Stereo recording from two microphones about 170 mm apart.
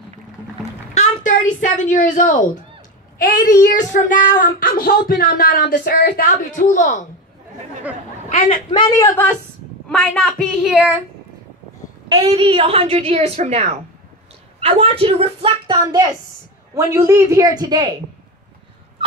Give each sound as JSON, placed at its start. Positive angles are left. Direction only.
{"t": 0.9, "sound": "speech", "side_deg": 45}
{"t": 3.6, "sound": "child singing", "side_deg": 50}
{"t": 8.6, "sound": "speech", "side_deg": 25}
{"t": 12.1, "sound": "a woman's voice", "side_deg": -35}